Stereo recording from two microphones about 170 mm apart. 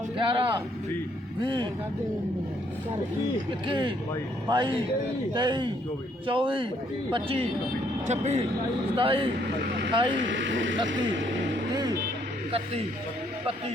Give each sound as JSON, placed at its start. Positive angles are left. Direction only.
{"t": 0.2, "sound": "a sound", "side_deg": -30}
{"t": 1.4, "sound": "a man's voice", "side_deg": -30}
{"t": 3.7, "sound": "a man's voice", "side_deg": -30}
{"t": 10.2, "sound": "speech", "side_deg": -90}
{"t": 12.5, "sound": "speech", "side_deg": -35}